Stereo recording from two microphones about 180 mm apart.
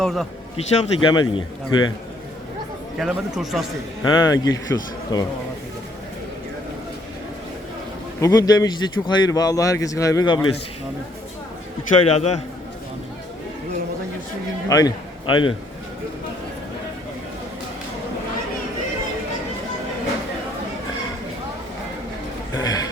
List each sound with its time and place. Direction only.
0.0 s speech: centre (ahead or behind)
0.5 s a man's voice: 30° left (ahead or behind)
3.0 s speech: centre (ahead or behind)
4.0 s a man's voice: 20° left (ahead or behind)
8.2 s a man's voice: 20° left (ahead or behind)
12.0 s a man's voice: 35° left (ahead or behind)
14.7 s a man's voice: 20° left (ahead or behind)
22.5 s a sound: 20° left (ahead or behind)